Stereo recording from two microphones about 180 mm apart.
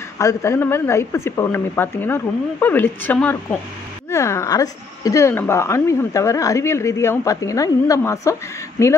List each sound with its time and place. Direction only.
0.2 s a woman's voice: 15° left (ahead or behind)